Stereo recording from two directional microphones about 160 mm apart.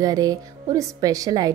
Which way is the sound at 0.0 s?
20° right (ahead or behind).